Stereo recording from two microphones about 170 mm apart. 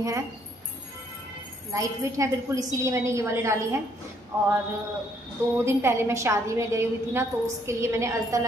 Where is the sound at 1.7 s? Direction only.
20° right (ahead or behind).